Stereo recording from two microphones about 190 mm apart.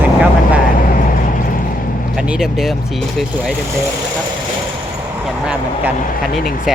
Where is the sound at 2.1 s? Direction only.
5° right (ahead or behind).